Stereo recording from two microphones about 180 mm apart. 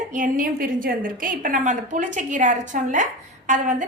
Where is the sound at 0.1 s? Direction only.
45° right (ahead or behind).